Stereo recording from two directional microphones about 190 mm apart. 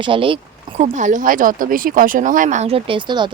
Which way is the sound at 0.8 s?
40° right (ahead or behind).